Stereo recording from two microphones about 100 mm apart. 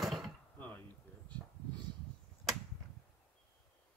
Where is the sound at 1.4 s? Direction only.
5° left (ahead or behind).